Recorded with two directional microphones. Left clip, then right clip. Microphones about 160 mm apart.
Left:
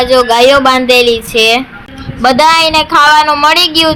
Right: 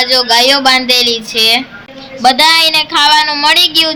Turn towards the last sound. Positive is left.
turn(degrees=20)  # may be behind; listen again after turning